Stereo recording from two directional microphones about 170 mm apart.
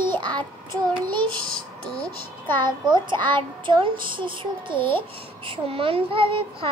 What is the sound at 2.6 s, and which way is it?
A child's voice, 25° right (ahead or behind).